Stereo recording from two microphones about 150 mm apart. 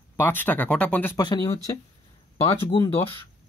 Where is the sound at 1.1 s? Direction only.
25° left (ahead or behind).